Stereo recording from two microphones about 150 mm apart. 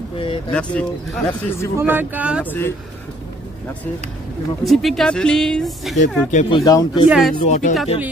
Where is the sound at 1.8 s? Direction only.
15° right (ahead or behind).